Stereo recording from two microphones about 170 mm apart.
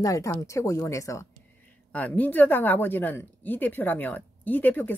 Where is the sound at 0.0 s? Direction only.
20° left (ahead or behind).